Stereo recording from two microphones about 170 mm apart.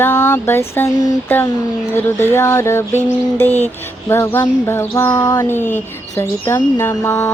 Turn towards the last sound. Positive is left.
turn(degrees=15)  # may be behind; listen again after turning